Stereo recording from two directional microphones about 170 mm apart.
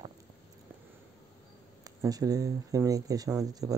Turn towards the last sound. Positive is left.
turn(degrees=-20)  # may be behind; listen again after turning